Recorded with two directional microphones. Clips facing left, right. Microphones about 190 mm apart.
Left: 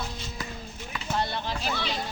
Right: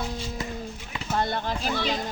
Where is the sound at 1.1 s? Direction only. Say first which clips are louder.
Right 3 dB; 50° right (ahead or behind).